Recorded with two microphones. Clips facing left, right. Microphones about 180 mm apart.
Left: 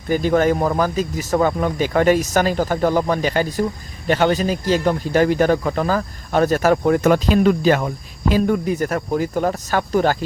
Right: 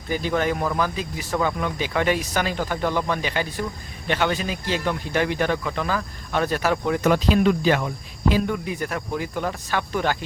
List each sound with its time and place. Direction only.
0.1 s speech: 45° left (ahead or behind)